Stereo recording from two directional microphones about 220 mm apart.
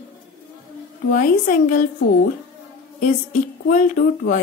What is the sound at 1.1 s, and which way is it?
Speech, 40° left (ahead or behind).